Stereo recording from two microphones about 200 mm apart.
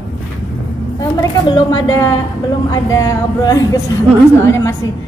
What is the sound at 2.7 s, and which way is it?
Speech, 15° left (ahead or behind).